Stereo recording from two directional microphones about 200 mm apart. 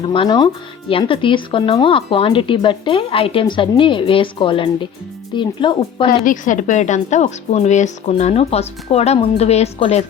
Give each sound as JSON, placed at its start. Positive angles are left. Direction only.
{"t": 0.1, "sound": "speech", "side_deg": 25}
{"t": 6.2, "sound": "a woman's voice", "side_deg": 40}